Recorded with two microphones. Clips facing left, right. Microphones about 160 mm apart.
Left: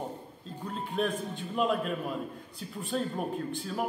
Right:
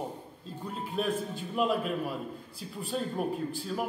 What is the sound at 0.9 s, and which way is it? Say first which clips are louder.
Speech: even; 5° right (ahead or behind).